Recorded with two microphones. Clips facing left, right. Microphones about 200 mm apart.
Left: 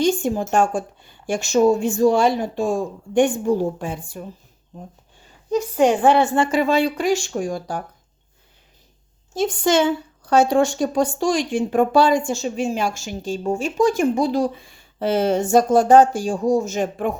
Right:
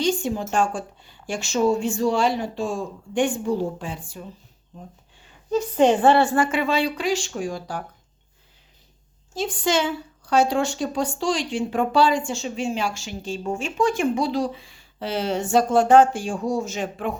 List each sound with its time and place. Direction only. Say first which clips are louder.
0.0 s a woman's voice: left 4 dB; 45° left (ahead or behind)
5.5 s a woman's voice: left 1 dB; 10° left (ahead or behind)
6.5 s a woman's voice: left 4 dB; 40° left (ahead or behind)
9.4 s a woman's voice: left 5 dB; 50° left (ahead or behind)